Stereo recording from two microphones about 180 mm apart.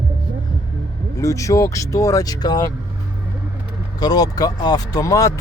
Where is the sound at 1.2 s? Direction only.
15° left (ahead or behind).